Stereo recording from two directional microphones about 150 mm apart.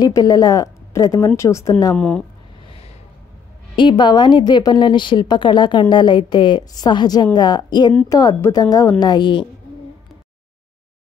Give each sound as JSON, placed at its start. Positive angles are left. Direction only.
{"t": 0.0, "sound": "a woman's voice", "side_deg": 25}
{"t": 2.0, "sound": "speech", "side_deg": 10}
{"t": 3.7, "sound": "a woman's voice", "side_deg": 30}